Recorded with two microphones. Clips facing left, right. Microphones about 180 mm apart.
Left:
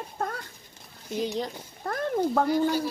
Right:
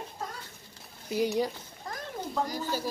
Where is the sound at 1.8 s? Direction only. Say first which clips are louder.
Left 11 dB; 60° left (ahead or behind).